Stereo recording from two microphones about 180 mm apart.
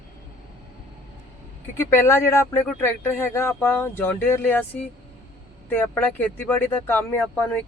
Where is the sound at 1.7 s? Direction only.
15° left (ahead or behind).